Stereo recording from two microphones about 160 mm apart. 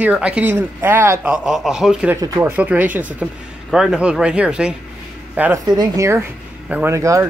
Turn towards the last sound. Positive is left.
turn(degrees=-20)  # may be behind; listen again after turning